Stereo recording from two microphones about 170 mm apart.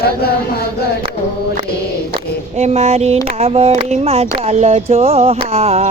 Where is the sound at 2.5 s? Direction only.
40° right (ahead or behind).